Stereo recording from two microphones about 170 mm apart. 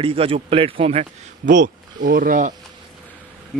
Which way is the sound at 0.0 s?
35° right (ahead or behind).